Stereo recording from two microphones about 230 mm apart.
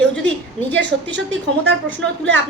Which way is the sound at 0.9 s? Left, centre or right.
Right.